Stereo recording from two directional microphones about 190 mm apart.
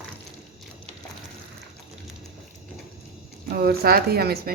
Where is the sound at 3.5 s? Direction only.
55° right (ahead or behind).